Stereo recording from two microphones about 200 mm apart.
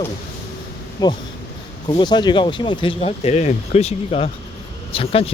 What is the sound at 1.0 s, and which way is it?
Speech, 20° left (ahead or behind).